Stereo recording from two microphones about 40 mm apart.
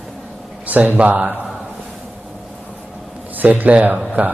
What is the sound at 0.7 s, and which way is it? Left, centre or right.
Speech, right.